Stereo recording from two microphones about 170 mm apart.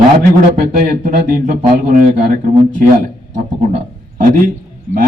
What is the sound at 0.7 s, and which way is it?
Speech, 55° right (ahead or behind).